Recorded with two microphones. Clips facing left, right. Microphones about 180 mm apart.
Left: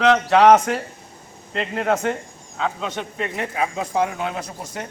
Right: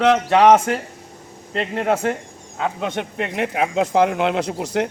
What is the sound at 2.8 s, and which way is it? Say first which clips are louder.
Speech: right 3 dB; 60° right (ahead or behind).